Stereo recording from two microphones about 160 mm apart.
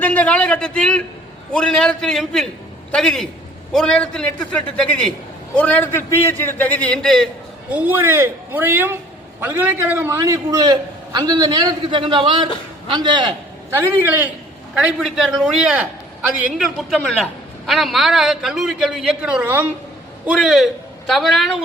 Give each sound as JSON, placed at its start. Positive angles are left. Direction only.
{"t": 0.0, "sound": "a man's voice", "side_deg": 10}
{"t": 7.7, "sound": "a man's voice", "side_deg": -10}
{"t": 13.7, "sound": "a man's voice", "side_deg": -10}
{"t": 14.8, "sound": "a man's voice", "side_deg": 0}